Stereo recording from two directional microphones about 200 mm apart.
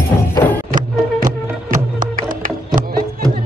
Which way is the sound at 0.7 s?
45° right (ahead or behind).